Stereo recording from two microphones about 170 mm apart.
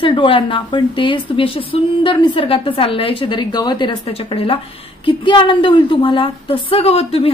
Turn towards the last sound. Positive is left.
turn(degrees=35)  # may be behind; listen again after turning